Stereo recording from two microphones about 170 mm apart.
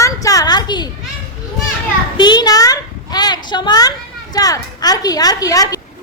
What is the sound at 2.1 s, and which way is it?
A child's voice, 25° left (ahead or behind).